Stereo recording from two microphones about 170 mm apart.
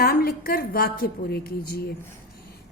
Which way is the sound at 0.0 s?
60° left (ahead or behind).